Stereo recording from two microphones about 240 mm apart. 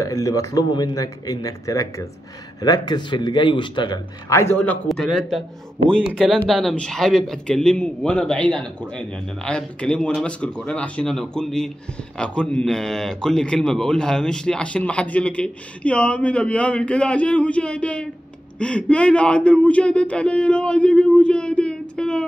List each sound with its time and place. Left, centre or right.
0.0 s a man's voice: centre